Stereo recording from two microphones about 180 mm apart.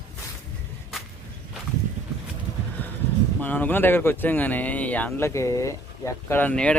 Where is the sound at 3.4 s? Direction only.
10° left (ahead or behind).